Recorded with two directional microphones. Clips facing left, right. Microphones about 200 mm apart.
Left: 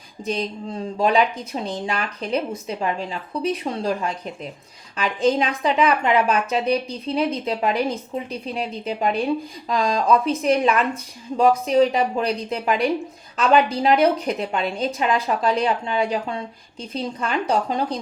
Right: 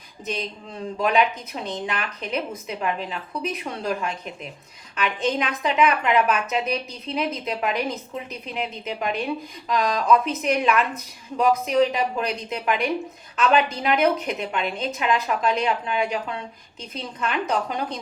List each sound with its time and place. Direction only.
0.9 s a woman's voice: 30° left (ahead or behind)